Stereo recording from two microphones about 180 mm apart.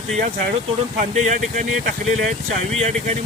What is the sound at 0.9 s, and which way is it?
Speech, 45° right (ahead or behind).